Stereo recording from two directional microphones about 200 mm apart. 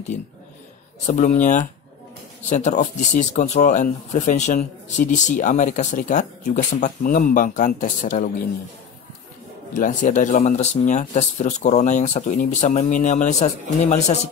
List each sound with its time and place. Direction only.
1.0 s speech: 40° left (ahead or behind)
9.8 s speech: 40° left (ahead or behind)